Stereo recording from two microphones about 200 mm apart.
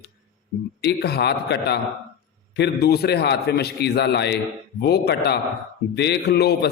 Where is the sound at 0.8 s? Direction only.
55° left (ahead or behind).